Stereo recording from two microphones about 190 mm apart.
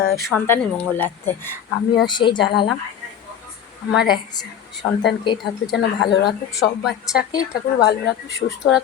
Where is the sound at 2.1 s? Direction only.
25° left (ahead or behind).